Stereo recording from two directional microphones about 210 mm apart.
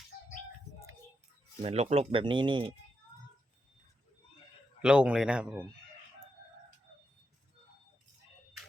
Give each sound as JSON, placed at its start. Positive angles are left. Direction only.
{"t": 1.6, "sound": "speech", "side_deg": -30}
{"t": 4.8, "sound": "speech", "side_deg": -5}